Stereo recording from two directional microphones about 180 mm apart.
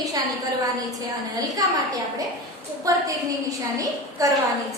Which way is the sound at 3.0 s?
20° right (ahead or behind).